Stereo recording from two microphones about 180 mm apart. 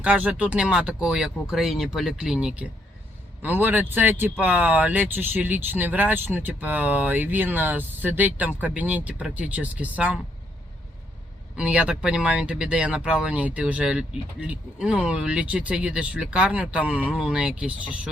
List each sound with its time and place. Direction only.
0.0 s speech: 5° right (ahead or behind)
11.5 s speech: 5° right (ahead or behind)